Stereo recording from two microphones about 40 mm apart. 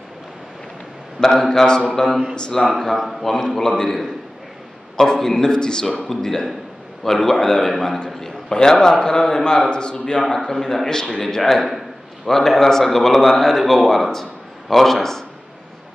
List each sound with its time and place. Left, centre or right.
1.2 s a man's voice: centre